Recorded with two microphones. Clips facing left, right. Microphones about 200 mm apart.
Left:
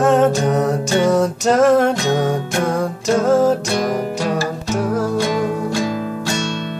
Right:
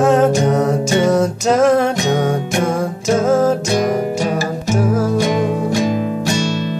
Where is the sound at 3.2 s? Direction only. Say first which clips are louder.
Even; centre (ahead or behind).